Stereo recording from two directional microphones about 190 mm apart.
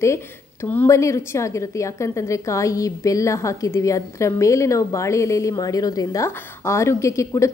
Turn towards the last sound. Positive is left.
turn(degrees=15)  # may be behind; listen again after turning